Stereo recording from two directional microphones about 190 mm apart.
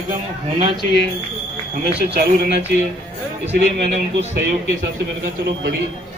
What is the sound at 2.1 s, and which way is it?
Speech, 55° right (ahead or behind).